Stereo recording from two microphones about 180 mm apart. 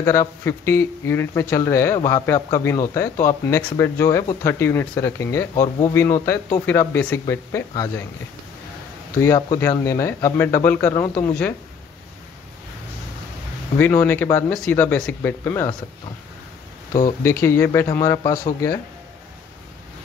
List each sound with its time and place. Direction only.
0.0 s speech: 15° left (ahead or behind)
9.2 s speech: 15° left (ahead or behind)
13.7 s speech: 10° left (ahead or behind)
17.2 s speech: 15° left (ahead or behind)